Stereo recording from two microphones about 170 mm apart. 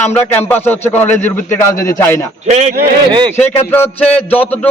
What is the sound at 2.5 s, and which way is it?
Speech, 40° right (ahead or behind).